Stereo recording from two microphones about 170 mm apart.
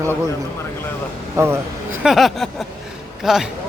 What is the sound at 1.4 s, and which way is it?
Speech, 20° right (ahead or behind).